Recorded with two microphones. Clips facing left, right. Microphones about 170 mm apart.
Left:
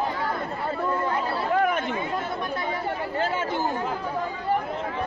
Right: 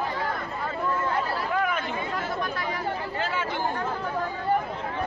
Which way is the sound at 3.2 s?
45° left (ahead or behind).